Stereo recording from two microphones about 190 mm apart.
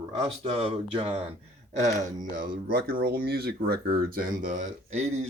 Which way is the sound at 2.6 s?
50° right (ahead or behind).